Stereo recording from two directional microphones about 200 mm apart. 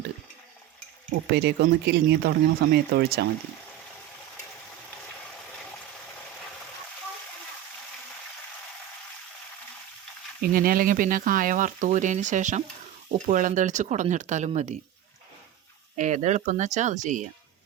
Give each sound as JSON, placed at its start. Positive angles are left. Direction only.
{"t": 1.1, "sound": "speech", "side_deg": -55}
{"t": 10.4, "sound": "speech", "side_deg": -45}
{"t": 16.0, "sound": "speech", "side_deg": -35}